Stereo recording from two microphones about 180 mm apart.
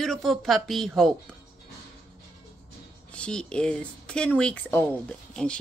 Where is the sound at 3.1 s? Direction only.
5° left (ahead or behind).